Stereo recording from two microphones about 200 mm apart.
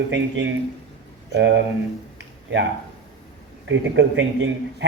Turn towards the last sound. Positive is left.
turn(degrees=-65)  # may be behind; listen again after turning